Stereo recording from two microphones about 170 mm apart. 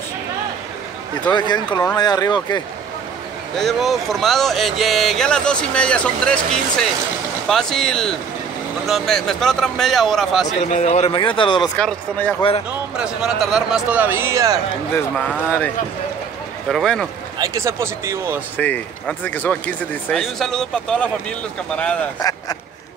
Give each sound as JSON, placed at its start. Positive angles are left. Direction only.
{"t": 1.3, "sound": "speech", "side_deg": 25}
{"t": 3.5, "sound": "speech", "side_deg": 0}
{"t": 10.7, "sound": "speech", "side_deg": 45}
{"t": 11.8, "sound": "speech", "side_deg": 10}
{"t": 12.4, "sound": "speech", "side_deg": 35}
{"t": 12.9, "sound": "speech", "side_deg": -5}
{"t": 15.0, "sound": "speech", "side_deg": 10}
{"t": 17.4, "sound": "speech", "side_deg": -15}
{"t": 18.6, "sound": "speech", "side_deg": 10}